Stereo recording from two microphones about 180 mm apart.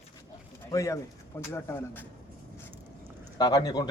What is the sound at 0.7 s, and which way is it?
Speech, 15° left (ahead or behind).